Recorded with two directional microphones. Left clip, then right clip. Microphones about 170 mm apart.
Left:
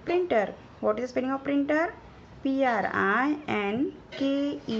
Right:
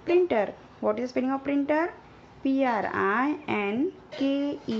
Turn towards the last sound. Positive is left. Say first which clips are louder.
# even
turn(degrees=-30)  # may be behind; listen again after turning